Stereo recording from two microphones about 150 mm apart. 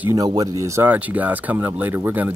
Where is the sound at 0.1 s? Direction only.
25° right (ahead or behind).